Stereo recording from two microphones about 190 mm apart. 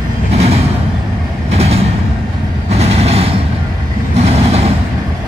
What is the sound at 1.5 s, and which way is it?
Vehicle, 35° right (ahead or behind).